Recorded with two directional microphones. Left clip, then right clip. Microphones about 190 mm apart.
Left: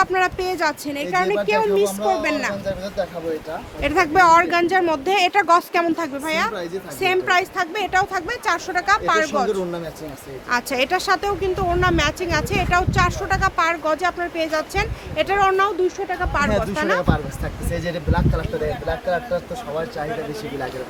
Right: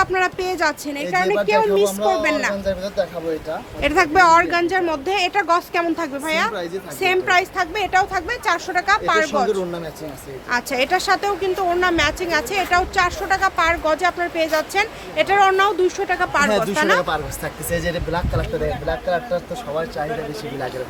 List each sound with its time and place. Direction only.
0.0 s speech: 10° left (ahead or behind)
2.6 s speech: 20° right (ahead or behind)
3.8 s speech: centre (ahead or behind)
16.0 s speech: 15° right (ahead or behind)
16.3 s speech: 5° right (ahead or behind)